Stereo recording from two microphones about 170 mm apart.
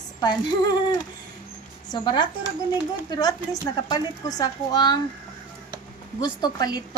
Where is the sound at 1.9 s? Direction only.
25° left (ahead or behind).